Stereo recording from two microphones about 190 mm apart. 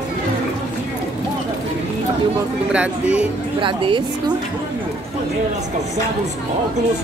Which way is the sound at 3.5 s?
25° right (ahead or behind).